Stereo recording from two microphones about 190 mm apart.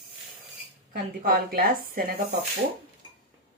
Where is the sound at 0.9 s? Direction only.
50° right (ahead or behind).